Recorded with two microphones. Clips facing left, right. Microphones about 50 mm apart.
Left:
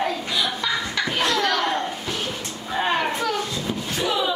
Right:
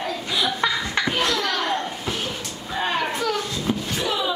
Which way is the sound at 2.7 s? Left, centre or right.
Centre.